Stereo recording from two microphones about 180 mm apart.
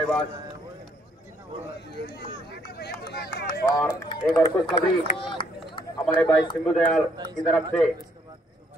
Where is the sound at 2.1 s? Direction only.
60° left (ahead or behind).